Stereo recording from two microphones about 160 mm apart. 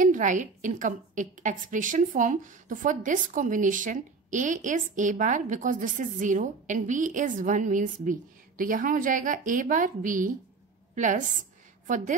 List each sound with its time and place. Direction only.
0.0 s a woman's voice: 55° right (ahead or behind)